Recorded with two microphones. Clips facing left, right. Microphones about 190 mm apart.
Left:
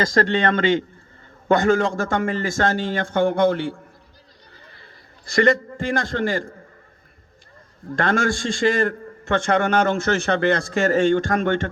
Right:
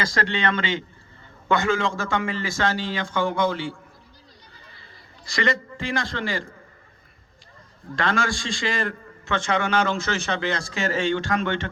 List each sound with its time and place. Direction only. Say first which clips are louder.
0.0 s a man's voice: left 6 dB; 45° left (ahead or behind)
4.5 s a sound: left 2 dB; 60° left (ahead or behind)
7.9 s a man's voice: left 4 dB; 50° left (ahead or behind)